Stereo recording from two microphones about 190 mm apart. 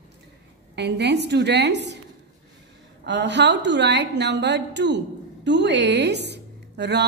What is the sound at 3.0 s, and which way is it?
A woman's voice, 70° right (ahead or behind).